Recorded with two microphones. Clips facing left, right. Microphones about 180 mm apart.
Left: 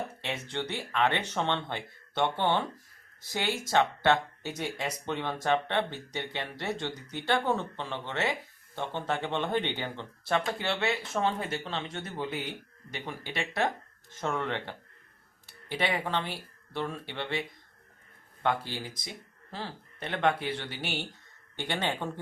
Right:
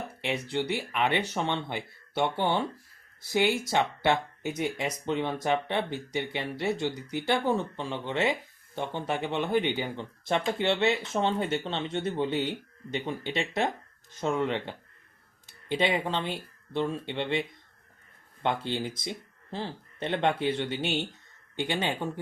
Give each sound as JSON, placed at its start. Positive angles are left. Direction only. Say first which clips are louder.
{"t": 0.2, "sound": "speech", "louder": "right 5 dB", "side_deg": -10}
{"t": 18.4, "sound": "speech", "louder": "right 2 dB", "side_deg": -25}